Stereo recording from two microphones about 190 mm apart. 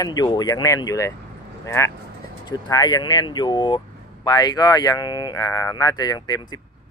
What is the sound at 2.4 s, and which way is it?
Speech, 20° left (ahead or behind).